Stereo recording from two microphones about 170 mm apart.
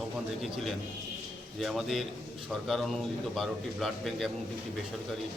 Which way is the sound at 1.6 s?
Centre (ahead or behind).